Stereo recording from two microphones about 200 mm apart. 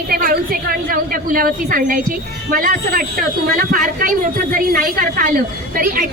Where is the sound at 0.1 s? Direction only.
45° right (ahead or behind).